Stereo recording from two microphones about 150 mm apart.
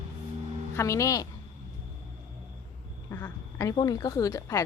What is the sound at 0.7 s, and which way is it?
Speech, 20° left (ahead or behind).